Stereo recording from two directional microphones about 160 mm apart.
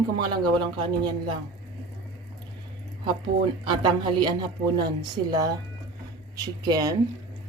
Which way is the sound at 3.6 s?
30° right (ahead or behind).